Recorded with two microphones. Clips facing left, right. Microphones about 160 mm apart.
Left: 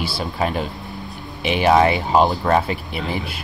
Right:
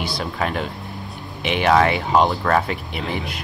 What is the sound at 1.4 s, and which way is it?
Speech, 35° left (ahead or behind).